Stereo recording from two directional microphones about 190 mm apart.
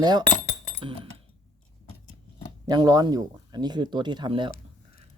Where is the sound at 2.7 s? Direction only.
20° right (ahead or behind).